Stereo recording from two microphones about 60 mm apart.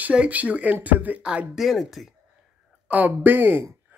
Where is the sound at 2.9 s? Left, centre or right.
Right.